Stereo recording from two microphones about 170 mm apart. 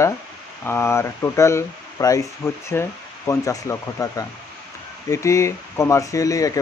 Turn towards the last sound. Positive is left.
turn(degrees=20)  # may be behind; listen again after turning